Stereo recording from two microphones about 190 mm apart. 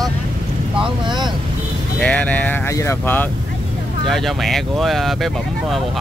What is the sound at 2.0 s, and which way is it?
Speech, 5° left (ahead or behind).